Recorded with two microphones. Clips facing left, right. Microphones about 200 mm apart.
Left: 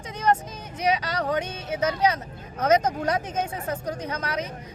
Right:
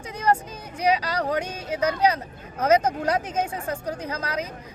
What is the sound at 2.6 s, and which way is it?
Speech, 30° right (ahead or behind).